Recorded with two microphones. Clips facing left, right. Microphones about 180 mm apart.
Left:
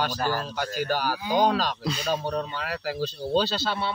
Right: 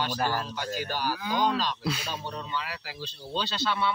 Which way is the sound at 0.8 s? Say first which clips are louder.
Left 6 dB; 45° left (ahead or behind).